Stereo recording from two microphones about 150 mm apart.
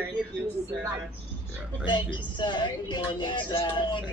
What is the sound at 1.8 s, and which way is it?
A woman's voice, 30° left (ahead or behind).